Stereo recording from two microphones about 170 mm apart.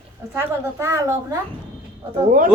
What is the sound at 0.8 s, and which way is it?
Speech, 15° right (ahead or behind).